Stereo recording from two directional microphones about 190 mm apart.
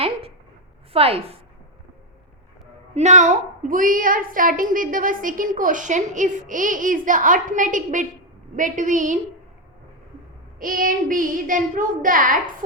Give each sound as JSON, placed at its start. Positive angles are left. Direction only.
{"t": 0.0, "sound": "a sound", "side_deg": -30}
{"t": 0.9, "sound": "a woman's voice", "side_deg": -30}
{"t": 2.9, "sound": "a woman's voice", "side_deg": -35}
{"t": 10.6, "sound": "a woman's voice", "side_deg": -45}